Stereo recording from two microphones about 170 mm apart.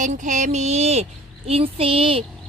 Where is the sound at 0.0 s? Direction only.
45° right (ahead or behind).